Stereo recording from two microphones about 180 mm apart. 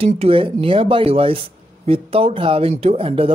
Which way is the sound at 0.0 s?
30° right (ahead or behind).